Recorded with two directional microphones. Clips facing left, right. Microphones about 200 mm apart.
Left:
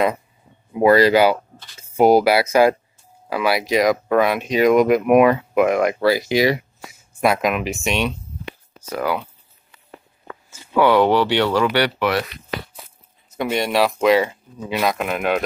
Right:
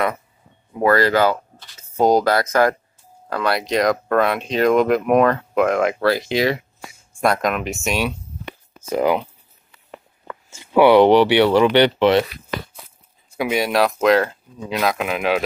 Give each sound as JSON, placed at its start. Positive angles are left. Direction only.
{"t": 0.7, "sound": "speech", "side_deg": 15}
{"t": 8.8, "sound": "speech", "side_deg": -20}
{"t": 10.5, "sound": "speech", "side_deg": -20}
{"t": 13.4, "sound": "speech", "side_deg": -5}